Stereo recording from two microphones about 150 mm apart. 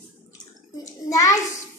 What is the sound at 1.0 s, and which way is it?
Hands, 20° left (ahead or behind).